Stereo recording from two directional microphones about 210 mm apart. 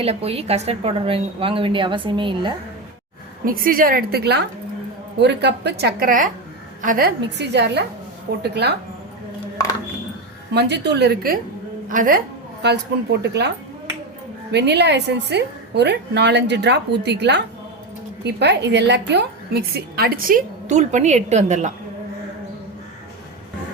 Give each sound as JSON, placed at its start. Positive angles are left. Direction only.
{"t": 0.0, "sound": "a woman's voice", "side_deg": -30}
{"t": 3.4, "sound": "a woman's voice", "side_deg": -40}
{"t": 10.5, "sound": "a woman's voice", "side_deg": -55}
{"t": 12.6, "sound": "a woman's voice", "side_deg": -55}
{"t": 14.5, "sound": "a woman's voice", "side_deg": -55}